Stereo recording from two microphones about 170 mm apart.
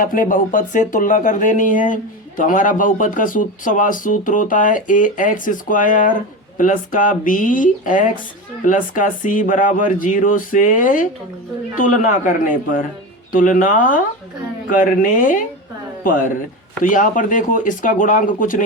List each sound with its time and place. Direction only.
0.0 s speech: 55° left (ahead or behind)
16.8 s speech: 50° left (ahead or behind)